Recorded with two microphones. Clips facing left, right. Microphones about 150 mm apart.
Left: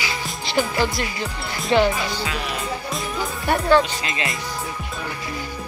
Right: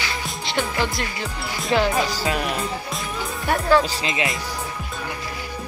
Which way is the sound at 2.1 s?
45° right (ahead or behind).